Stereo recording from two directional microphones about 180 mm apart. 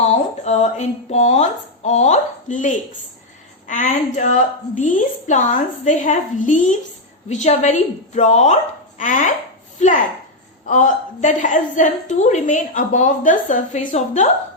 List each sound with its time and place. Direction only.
0.0 s a woman's voice: 40° left (ahead or behind)